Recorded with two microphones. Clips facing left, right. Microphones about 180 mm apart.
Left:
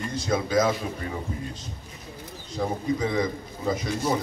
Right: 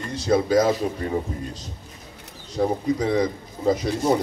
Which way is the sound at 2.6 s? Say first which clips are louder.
Right 4 dB; 30° right (ahead or behind).